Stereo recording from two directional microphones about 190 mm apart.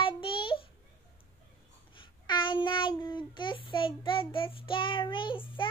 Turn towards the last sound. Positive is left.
turn(degrees=25)  # may be behind; listen again after turning